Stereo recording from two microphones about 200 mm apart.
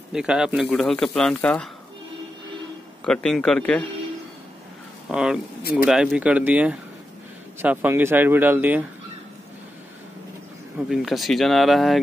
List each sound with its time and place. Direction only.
0.1 s speech: 5° right (ahead or behind)
3.1 s speech: 5° left (ahead or behind)
5.0 s speech: 5° right (ahead or behind)
5.6 s speech: 50° left (ahead or behind)
5.9 s speech: 5° right (ahead or behind)
10.9 s speech: centre (ahead or behind)